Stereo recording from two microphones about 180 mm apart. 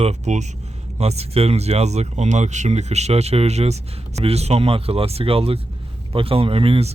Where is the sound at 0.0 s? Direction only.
40° right (ahead or behind).